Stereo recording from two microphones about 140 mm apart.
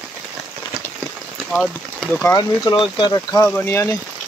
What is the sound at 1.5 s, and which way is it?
Speech, centre (ahead or behind).